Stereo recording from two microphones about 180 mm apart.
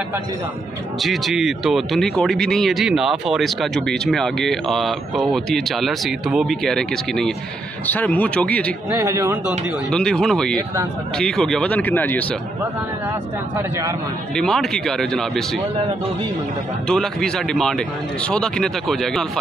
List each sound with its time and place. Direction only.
1.0 s speech: centre (ahead or behind)
8.9 s a man's voice: 15° right (ahead or behind)
9.8 s speech: 5° left (ahead or behind)
13.6 s a man's voice: 15° right (ahead or behind)
14.3 s speech: centre (ahead or behind)
16.8 s speech: 5° left (ahead or behind)